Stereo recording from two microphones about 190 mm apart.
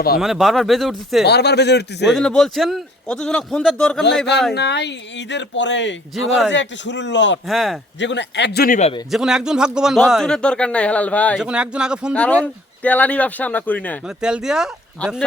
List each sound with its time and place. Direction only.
0.2 s a man's voice: centre (ahead or behind)
1.2 s a man's voice: 60° left (ahead or behind)
2.0 s a man's voice: 5° left (ahead or behind)
4.5 s speech: 60° left (ahead or behind)
7.4 s a man's voice: centre (ahead or behind)
7.9 s speech: 70° left (ahead or behind); by 8.8 s 50° left (ahead or behind)
9.0 s a man's voice: centre (ahead or behind)
11.3 s a man's voice: 5° right (ahead or behind)
12.1 s speech: 5° left (ahead or behind)
14.2 s a man's voice: 5° right (ahead or behind)